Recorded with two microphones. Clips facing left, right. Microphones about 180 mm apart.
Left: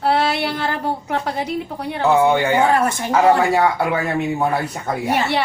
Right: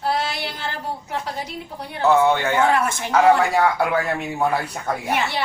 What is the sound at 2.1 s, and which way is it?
Speech, 10° left (ahead or behind).